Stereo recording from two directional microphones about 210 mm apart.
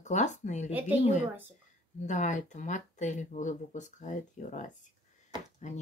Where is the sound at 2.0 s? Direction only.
35° left (ahead or behind).